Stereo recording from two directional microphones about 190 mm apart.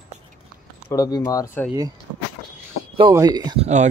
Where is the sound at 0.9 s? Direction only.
20° left (ahead or behind).